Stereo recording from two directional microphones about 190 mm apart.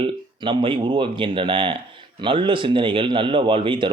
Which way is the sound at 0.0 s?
25° right (ahead or behind).